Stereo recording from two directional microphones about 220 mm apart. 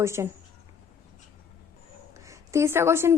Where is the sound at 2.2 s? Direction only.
15° right (ahead or behind).